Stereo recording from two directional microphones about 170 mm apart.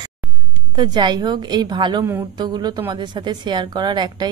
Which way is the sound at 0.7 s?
25° right (ahead or behind).